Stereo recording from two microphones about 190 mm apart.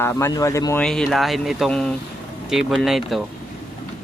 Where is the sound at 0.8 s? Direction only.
5° left (ahead or behind).